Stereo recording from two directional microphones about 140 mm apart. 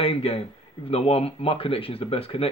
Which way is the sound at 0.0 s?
45° left (ahead or behind).